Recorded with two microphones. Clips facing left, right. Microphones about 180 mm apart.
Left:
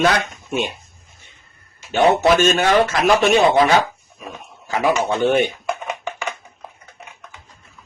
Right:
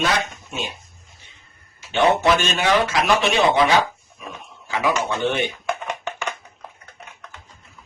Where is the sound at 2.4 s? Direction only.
50° left (ahead or behind).